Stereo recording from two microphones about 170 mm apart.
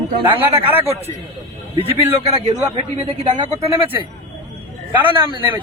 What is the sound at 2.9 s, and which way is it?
Speech, 40° right (ahead or behind).